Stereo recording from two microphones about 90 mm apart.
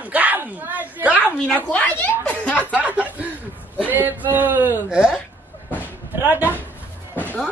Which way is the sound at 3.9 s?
20° right (ahead or behind).